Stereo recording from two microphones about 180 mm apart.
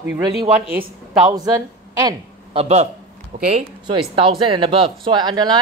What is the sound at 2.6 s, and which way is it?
Speech, 35° right (ahead or behind).